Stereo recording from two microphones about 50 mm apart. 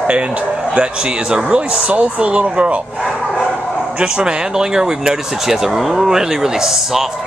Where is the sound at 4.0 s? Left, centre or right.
Centre.